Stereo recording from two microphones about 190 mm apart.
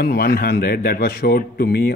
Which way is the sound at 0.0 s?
55° left (ahead or behind).